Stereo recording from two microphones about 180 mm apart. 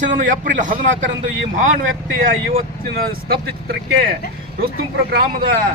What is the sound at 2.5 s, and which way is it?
Speech, 55° right (ahead or behind).